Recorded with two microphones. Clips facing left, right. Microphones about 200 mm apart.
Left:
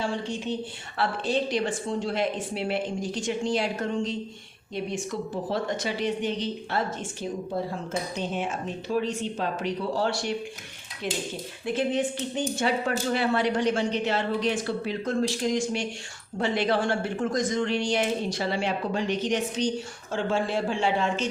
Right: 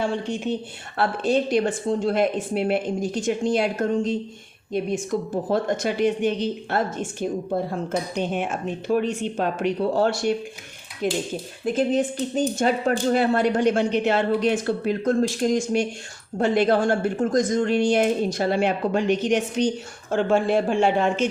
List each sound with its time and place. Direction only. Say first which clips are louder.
0.0 s speech: right 4 dB; 55° right (ahead or behind)